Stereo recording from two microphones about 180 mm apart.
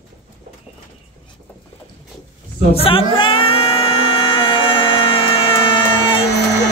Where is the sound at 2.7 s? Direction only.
30° left (ahead or behind).